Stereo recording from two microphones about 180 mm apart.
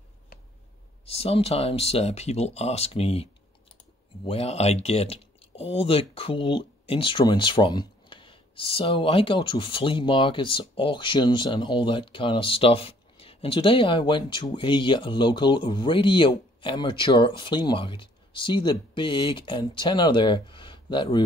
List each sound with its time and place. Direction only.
1.0 s speech: 35° left (ahead or behind)
4.3 s speech: 35° left (ahead or behind)